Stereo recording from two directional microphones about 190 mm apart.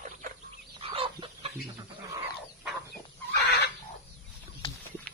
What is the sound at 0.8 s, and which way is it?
Chicken, 30° right (ahead or behind).